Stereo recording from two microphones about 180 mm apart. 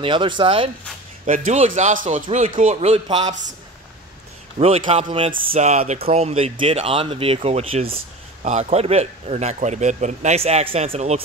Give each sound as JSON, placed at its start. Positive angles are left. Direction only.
{"t": 0.0, "sound": "speech", "side_deg": -25}
{"t": 1.2, "sound": "a man's voice", "side_deg": -45}
{"t": 4.6, "sound": "a man's voice", "side_deg": -35}